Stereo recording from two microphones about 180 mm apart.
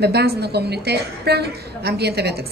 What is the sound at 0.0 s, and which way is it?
A woman's voice, 65° right (ahead or behind).